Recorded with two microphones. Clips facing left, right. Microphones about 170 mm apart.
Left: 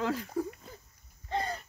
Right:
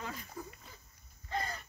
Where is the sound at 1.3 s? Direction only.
25° left (ahead or behind).